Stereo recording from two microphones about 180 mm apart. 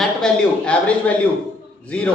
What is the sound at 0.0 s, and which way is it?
Speech, 5° left (ahead or behind).